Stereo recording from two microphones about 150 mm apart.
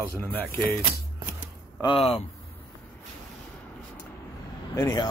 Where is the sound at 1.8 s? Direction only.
35° left (ahead or behind).